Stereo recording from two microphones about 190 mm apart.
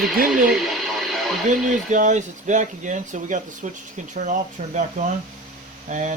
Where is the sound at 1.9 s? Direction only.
40° right (ahead or behind).